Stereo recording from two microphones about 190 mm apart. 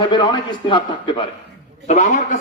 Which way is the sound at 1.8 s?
40° left (ahead or behind).